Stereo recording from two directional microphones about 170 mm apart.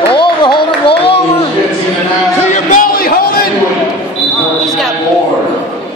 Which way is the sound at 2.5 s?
55° left (ahead or behind).